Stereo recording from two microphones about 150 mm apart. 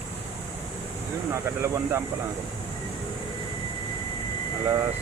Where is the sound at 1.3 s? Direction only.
20° right (ahead or behind).